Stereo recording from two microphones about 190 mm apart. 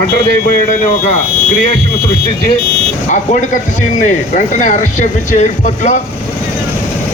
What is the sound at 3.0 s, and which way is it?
Speech, 40° left (ahead or behind).